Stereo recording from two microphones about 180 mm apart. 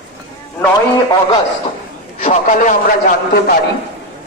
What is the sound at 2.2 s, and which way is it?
Speech, 40° left (ahead or behind).